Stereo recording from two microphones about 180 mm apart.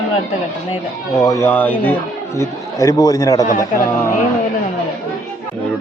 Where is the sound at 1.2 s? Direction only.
20° left (ahead or behind).